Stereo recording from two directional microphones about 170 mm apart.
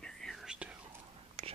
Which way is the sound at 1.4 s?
40° right (ahead or behind).